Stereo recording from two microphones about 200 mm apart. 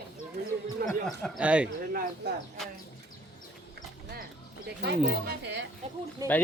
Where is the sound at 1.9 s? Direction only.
50° right (ahead or behind).